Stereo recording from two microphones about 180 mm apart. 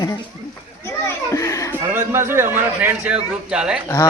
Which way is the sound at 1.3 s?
15° left (ahead or behind).